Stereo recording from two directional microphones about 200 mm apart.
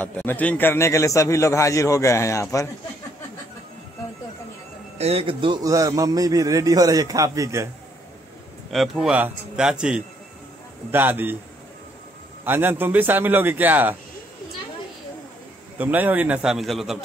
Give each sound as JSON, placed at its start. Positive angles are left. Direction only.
{"t": 0.0, "sound": "a man's voice", "side_deg": 10}
{"t": 4.9, "sound": "a man's voice", "side_deg": -30}
{"t": 8.7, "sound": "a man's voice", "side_deg": 0}
{"t": 12.4, "sound": "a man's voice", "side_deg": -10}
{"t": 15.8, "sound": "a man's voice", "side_deg": -10}